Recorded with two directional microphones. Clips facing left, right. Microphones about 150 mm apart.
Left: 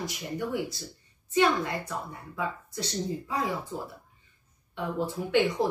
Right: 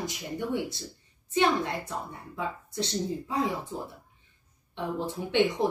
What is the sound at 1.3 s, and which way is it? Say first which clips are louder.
Speech: left 1 dB; 25° right (ahead or behind).